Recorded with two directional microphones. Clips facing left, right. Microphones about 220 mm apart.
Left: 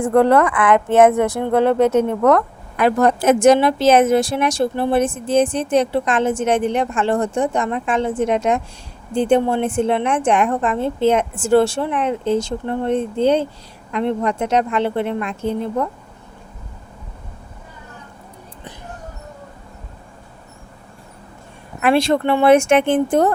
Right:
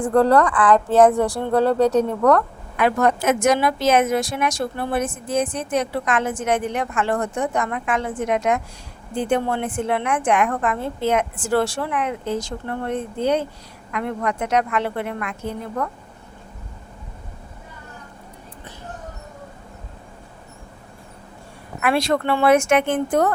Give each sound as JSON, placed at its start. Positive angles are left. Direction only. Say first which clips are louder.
{"t": 0.2, "sound": "speech", "louder": "left 2 dB", "side_deg": 25}
{"t": 2.7, "sound": "a woman's voice", "louder": "left 3 dB", "side_deg": 35}
{"t": 21.8, "sound": "speech", "louder": "left 4 dB", "side_deg": 25}